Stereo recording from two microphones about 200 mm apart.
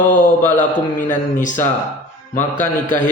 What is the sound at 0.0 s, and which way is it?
A man's voice, 40° left (ahead or behind).